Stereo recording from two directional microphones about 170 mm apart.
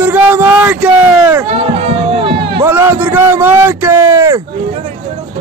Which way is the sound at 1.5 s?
35° right (ahead or behind).